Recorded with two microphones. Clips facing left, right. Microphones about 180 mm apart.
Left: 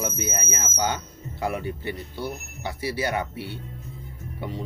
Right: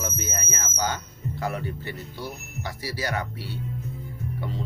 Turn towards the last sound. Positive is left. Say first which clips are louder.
# even
turn(degrees=15)  # may be behind; listen again after turning